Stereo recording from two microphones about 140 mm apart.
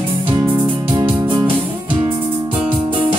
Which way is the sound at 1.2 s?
40° right (ahead or behind).